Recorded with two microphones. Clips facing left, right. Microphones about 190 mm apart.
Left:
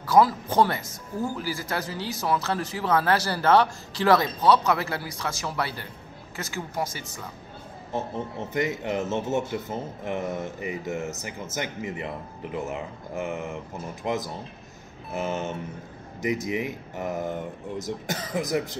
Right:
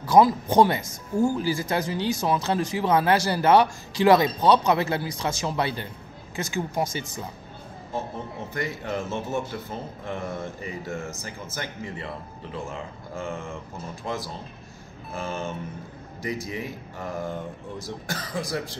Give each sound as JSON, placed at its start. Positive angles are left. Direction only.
{"t": 0.0, "sound": "speech", "side_deg": -20}
{"t": 8.5, "sound": "speech", "side_deg": 20}